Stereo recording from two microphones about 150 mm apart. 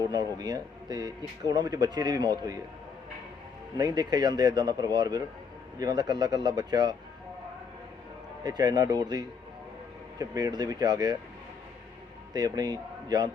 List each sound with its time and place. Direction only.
0.0 s speech: 25° right (ahead or behind)
3.8 s speech: 25° right (ahead or behind)
8.4 s speech: 25° right (ahead or behind)
12.3 s a man's voice: 25° right (ahead or behind)